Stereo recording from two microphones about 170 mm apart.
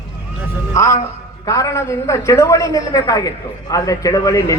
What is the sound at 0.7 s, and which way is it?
A man's voice, 15° left (ahead or behind).